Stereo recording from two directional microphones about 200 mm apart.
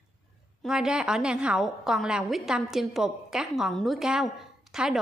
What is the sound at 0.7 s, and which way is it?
A woman's voice, 5° right (ahead or behind).